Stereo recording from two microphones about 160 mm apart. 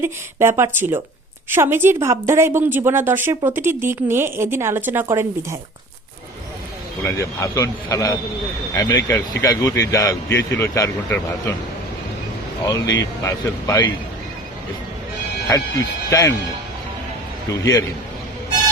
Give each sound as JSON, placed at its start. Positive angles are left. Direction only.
{"t": 0.0, "sound": "speech", "side_deg": -15}
{"t": 7.0, "sound": "a man's voice", "side_deg": 20}
{"t": 12.6, "sound": "a man's voice", "side_deg": 20}
{"t": 16.0, "sound": "speech", "side_deg": 20}
{"t": 17.6, "sound": "a man's voice", "side_deg": 25}